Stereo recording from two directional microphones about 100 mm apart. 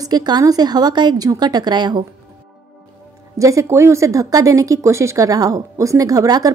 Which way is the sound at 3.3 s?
30° right (ahead or behind).